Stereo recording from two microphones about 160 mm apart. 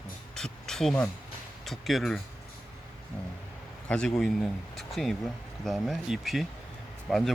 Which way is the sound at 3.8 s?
5° left (ahead or behind).